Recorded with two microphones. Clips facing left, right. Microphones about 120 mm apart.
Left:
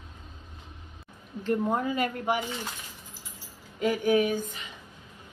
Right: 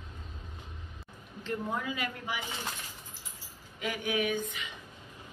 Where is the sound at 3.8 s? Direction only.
40° left (ahead or behind).